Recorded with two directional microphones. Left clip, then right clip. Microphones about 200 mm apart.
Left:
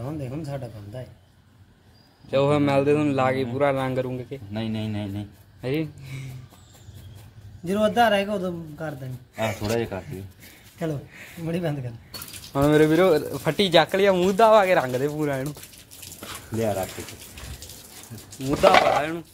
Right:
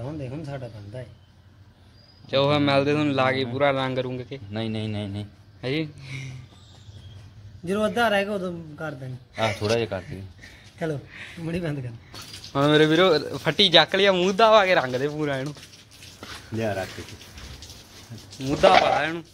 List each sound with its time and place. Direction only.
0.0 s speech: centre (ahead or behind)
2.2 s speech: centre (ahead or behind)
4.5 s speech: 25° right (ahead or behind)
5.6 s speech: centre (ahead or behind)
7.6 s speech: centre (ahead or behind)
9.8 s speech: 35° right (ahead or behind)
10.8 s speech: centre (ahead or behind)
18.6 s speech: centre (ahead or behind)